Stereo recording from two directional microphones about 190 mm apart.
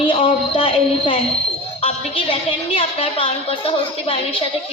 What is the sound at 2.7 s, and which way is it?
A woman's voice, 30° left (ahead or behind).